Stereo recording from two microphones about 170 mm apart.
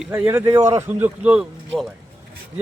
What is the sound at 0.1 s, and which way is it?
Speech, 10° right (ahead or behind).